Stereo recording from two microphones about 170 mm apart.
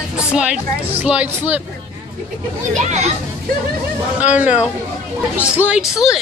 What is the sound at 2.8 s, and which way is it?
Speech, 40° right (ahead or behind).